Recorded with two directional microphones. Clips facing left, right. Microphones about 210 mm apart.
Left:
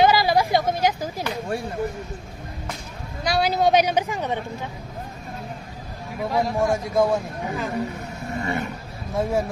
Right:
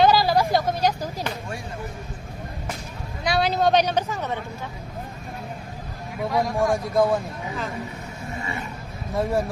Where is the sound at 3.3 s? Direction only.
5° left (ahead or behind).